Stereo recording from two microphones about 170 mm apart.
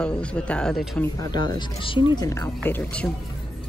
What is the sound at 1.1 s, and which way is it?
Speech, 25° left (ahead or behind).